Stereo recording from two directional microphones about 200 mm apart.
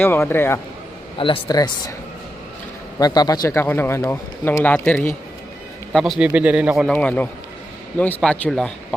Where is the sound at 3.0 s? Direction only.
20° left (ahead or behind); by 6.9 s 5° right (ahead or behind).